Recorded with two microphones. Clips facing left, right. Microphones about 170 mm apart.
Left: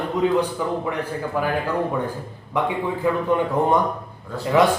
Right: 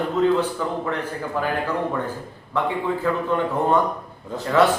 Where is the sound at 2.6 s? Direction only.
15° left (ahead or behind).